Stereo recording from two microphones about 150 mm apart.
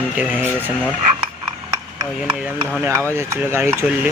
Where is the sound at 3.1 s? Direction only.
15° right (ahead or behind).